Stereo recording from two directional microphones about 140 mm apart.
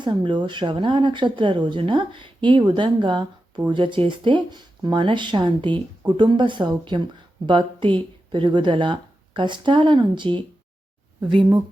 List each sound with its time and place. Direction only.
0.0 s speech: 35° right (ahead or behind)